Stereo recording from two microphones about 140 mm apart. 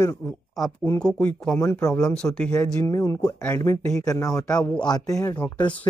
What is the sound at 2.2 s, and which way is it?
Speech, 5° left (ahead or behind).